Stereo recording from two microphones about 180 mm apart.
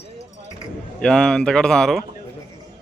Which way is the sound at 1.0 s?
5° left (ahead or behind).